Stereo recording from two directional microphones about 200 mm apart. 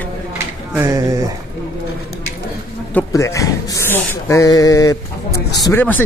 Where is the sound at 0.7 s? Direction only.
15° right (ahead or behind).